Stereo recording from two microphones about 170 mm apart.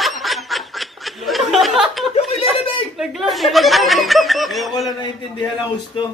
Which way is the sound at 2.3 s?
35° left (ahead or behind).